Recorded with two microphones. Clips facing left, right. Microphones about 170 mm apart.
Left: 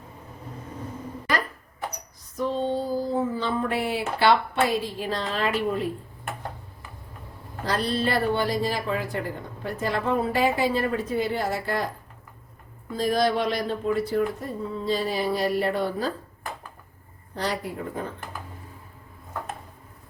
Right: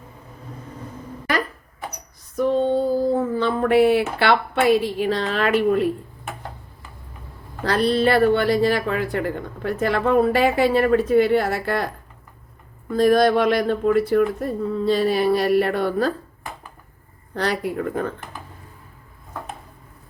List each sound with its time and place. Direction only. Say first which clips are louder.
2.3 s female singing: right 7 dB; 55° right (ahead or behind)
3.3 s speech: right 9 dB; 65° right (ahead or behind)
7.6 s speech: right 7 dB; 70° right (ahead or behind)
12.9 s speech: right 7 dB; 60° right (ahead or behind)
17.3 s speech: right 6 dB; 70° right (ahead or behind)